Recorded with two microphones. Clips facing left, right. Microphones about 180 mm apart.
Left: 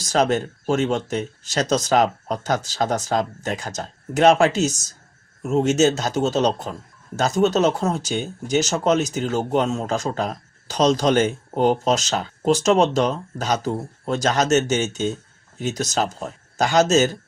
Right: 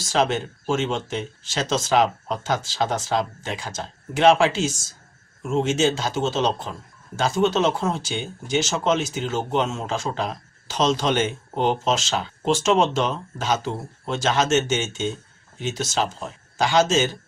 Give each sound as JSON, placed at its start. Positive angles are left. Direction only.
{"t": 0.0, "sound": "speech", "side_deg": 40}